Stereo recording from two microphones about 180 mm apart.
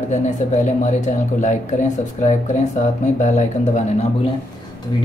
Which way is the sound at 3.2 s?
40° left (ahead or behind).